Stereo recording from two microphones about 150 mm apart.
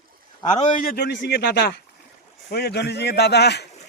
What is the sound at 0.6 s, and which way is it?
A man's voice, 75° left (ahead or behind).